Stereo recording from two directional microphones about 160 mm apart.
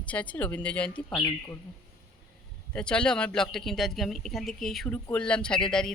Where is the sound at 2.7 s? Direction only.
5° left (ahead or behind).